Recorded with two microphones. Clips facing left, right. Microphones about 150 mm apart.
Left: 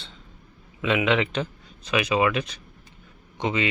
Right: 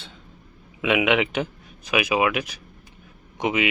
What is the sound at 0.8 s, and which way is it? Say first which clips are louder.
Speech: right 2 dB; 15° right (ahead or behind).